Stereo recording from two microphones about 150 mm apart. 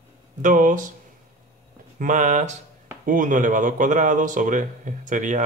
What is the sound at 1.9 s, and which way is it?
A man's voice, 55° right (ahead or behind).